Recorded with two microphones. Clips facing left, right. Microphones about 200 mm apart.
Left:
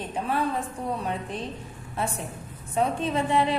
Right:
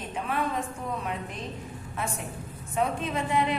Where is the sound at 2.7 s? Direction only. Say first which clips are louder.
Left 3 dB; 30° left (ahead or behind).